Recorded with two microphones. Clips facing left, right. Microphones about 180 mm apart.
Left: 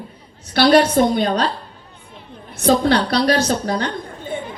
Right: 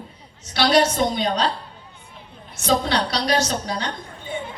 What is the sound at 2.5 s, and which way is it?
A woman's voice, 55° left (ahead or behind).